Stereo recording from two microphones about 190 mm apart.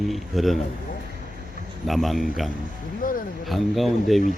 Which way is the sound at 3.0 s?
45° left (ahead or behind).